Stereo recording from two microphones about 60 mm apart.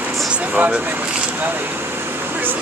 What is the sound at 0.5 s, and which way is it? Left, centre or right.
Speech, right.